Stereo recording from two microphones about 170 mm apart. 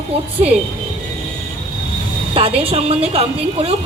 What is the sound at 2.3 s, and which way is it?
A woman's voice, 35° right (ahead or behind).